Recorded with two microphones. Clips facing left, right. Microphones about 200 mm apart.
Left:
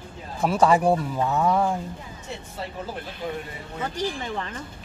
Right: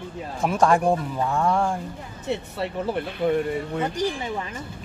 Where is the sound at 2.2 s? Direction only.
65° right (ahead or behind).